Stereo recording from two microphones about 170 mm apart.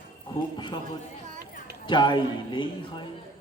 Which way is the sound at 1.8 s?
25° left (ahead or behind).